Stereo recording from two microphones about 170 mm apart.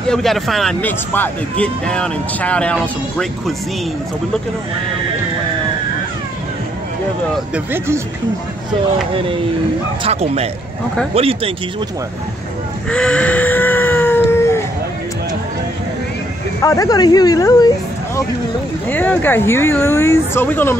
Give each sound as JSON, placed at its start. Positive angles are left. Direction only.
{"t": 0.1, "sound": "speech", "side_deg": 0}
{"t": 7.3, "sound": "speech", "side_deg": -10}
{"t": 10.0, "sound": "speech", "side_deg": -35}
{"t": 12.9, "sound": "a sound", "side_deg": 5}
{"t": 16.6, "sound": "speech", "side_deg": 20}
{"t": 18.9, "sound": "speech", "side_deg": 10}